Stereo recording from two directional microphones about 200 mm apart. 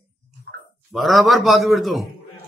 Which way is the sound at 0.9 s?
Centre (ahead or behind).